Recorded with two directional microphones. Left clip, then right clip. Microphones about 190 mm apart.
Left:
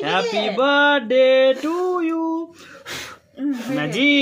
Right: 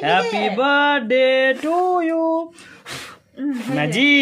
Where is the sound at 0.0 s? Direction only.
25° right (ahead or behind).